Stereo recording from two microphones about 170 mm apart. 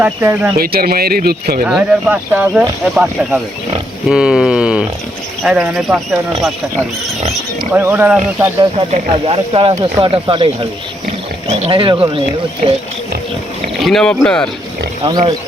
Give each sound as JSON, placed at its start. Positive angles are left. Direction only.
{"t": 0.0, "sound": "speech", "side_deg": -15}
{"t": 0.5, "sound": "speech", "side_deg": -60}
{"t": 1.6, "sound": "speech", "side_deg": -5}
{"t": 7.7, "sound": "speech", "side_deg": -15}
{"t": 8.9, "sound": "speech", "side_deg": -35}
{"t": 13.8, "sound": "speech", "side_deg": 5}
{"t": 15.0, "sound": "speech", "side_deg": -25}